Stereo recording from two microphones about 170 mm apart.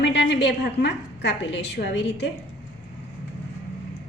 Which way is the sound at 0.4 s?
85° left.